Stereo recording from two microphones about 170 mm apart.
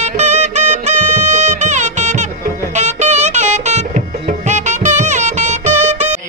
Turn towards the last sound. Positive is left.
turn(degrees=-45)  # may be behind; listen again after turning